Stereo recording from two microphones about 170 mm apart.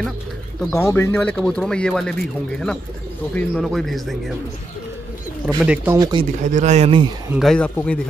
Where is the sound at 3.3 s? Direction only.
Centre (ahead or behind).